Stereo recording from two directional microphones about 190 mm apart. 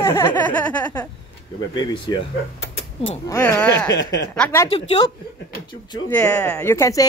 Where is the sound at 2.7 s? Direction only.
30° left (ahead or behind).